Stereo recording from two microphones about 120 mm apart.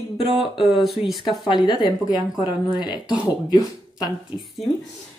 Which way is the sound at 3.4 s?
30° left (ahead or behind).